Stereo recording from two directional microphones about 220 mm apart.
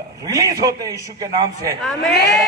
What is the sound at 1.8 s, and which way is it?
Speech, centre (ahead or behind).